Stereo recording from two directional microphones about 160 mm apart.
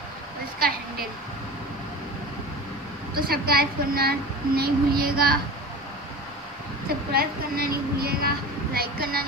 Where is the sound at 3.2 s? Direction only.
70° right (ahead or behind).